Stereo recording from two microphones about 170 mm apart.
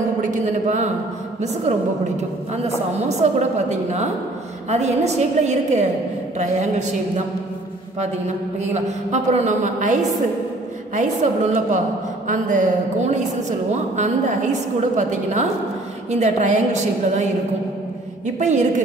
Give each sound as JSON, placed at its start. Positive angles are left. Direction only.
{"t": 0.2, "sound": "a woman's voice", "side_deg": -45}
{"t": 3.1, "sound": "a woman's voice", "side_deg": -40}
{"t": 8.7, "sound": "a woman's voice", "side_deg": -45}
{"t": 11.0, "sound": "a woman's voice", "side_deg": -45}
{"t": 18.2, "sound": "a woman's voice", "side_deg": -45}